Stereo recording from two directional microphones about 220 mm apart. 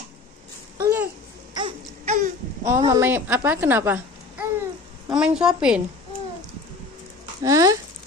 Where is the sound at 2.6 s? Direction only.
15° right (ahead or behind).